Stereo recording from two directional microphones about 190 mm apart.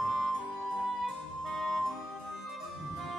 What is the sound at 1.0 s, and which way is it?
Music, centre (ahead or behind).